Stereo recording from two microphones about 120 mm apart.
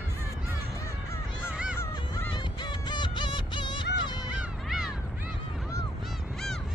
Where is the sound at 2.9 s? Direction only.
40° left (ahead or behind).